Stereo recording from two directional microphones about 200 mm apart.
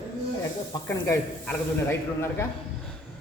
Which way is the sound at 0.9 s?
10° left (ahead or behind).